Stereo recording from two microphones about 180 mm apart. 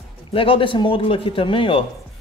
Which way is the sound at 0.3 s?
30° left (ahead or behind).